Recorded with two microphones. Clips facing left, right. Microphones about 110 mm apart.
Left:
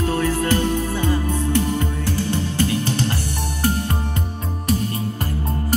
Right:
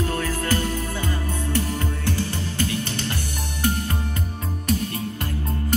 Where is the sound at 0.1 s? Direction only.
20° left (ahead or behind).